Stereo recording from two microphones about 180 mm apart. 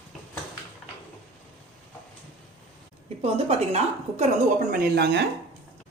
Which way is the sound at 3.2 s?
35° right (ahead or behind).